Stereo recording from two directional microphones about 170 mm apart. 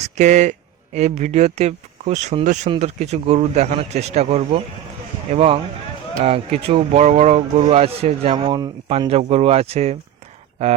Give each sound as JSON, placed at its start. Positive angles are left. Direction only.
{"t": 0.0, "sound": "speech", "side_deg": -45}